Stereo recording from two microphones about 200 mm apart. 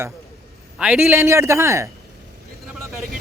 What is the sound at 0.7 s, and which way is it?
Speech, 5° right (ahead or behind).